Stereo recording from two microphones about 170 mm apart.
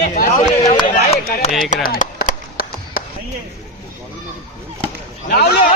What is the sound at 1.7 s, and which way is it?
Chop, 55° left (ahead or behind).